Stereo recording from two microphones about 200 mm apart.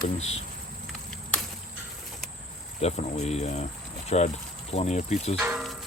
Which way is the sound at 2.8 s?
35° left (ahead or behind).